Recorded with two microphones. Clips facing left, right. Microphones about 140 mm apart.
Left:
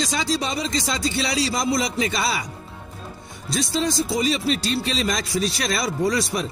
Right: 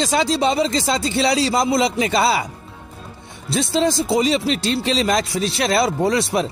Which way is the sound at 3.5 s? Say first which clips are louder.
Right 4 dB; 30° right (ahead or behind).